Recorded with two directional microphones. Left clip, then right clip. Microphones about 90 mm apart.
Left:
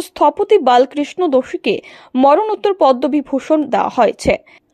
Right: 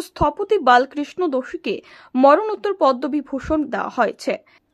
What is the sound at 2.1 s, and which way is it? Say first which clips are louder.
Speech: left 2 dB; centre (ahead or behind).